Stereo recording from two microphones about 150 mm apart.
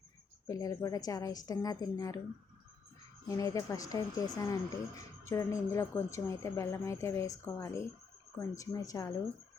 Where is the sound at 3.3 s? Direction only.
20° left (ahead or behind).